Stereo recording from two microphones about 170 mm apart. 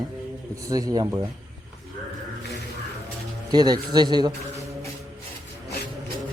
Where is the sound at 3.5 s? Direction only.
25° right (ahead or behind).